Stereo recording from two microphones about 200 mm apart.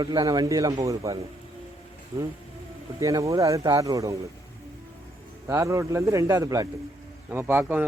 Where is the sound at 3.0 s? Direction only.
15° right (ahead or behind).